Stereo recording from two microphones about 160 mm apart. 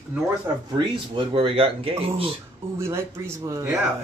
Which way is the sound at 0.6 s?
30° right (ahead or behind).